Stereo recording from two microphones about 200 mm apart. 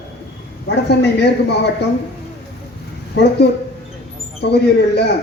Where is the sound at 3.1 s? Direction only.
60° left (ahead or behind).